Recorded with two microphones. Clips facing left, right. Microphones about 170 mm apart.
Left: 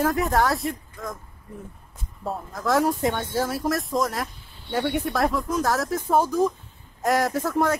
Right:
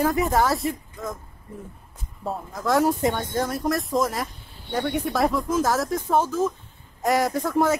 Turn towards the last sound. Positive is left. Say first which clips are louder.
# right 1 dB
turn(degrees=0)  # may be behind; listen again after turning